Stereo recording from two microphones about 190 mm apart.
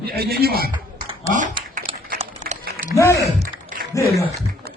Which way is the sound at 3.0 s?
15° left (ahead or behind).